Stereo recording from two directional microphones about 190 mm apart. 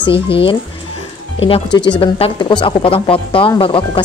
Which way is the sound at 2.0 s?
25° left (ahead or behind).